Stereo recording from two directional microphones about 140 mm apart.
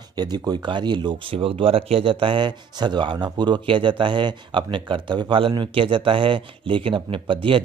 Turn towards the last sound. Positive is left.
turn(degrees=-40)  # may be behind; listen again after turning